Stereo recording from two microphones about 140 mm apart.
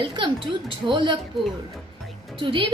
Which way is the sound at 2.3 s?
35° right (ahead or behind).